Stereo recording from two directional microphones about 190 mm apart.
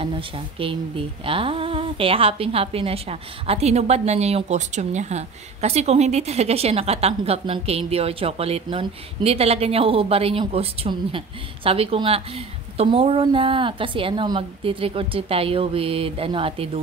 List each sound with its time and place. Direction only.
0.0 s a woman's voice: 30° right (ahead or behind)